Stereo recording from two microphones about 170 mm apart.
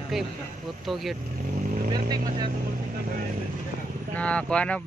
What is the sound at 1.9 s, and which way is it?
Speech, 25° right (ahead or behind).